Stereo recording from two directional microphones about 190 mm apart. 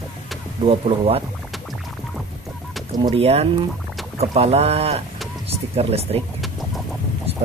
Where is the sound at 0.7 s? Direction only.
30° right (ahead or behind).